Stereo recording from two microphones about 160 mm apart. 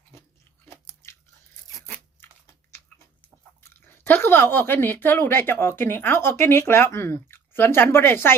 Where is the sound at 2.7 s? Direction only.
15° left (ahead or behind).